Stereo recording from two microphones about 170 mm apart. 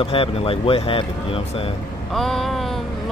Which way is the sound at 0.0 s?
35° left (ahead or behind).